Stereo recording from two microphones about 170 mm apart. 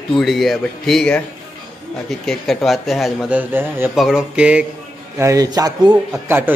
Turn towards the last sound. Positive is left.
turn(degrees=-10)  # may be behind; listen again after turning